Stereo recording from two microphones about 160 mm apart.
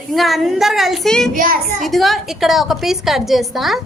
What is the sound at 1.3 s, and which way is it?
Speech, 60° right (ahead or behind).